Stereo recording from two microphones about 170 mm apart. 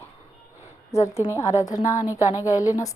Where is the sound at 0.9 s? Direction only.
15° left (ahead or behind).